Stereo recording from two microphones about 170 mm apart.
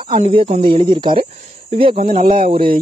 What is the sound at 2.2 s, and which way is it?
Speech, 55° right (ahead or behind).